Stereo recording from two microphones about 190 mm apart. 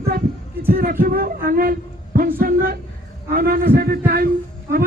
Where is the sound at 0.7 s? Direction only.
50° right (ahead or behind).